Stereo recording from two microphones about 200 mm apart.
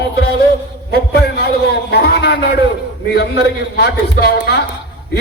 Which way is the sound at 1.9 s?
55° left (ahead or behind).